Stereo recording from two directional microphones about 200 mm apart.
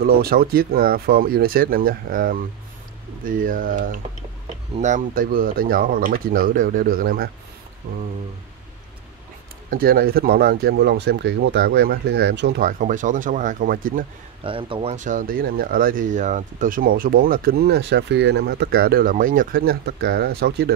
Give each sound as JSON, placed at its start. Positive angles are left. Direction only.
{"t": 0.0, "sound": "speech", "side_deg": -50}
{"t": 9.7, "sound": "speech", "side_deg": -50}
{"t": 14.4, "sound": "speech", "side_deg": -25}